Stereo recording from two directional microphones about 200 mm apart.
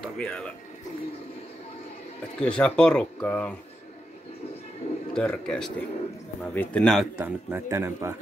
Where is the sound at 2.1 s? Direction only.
5° left (ahead or behind).